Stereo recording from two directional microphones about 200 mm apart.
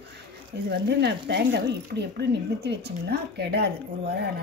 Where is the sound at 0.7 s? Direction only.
55° right (ahead or behind).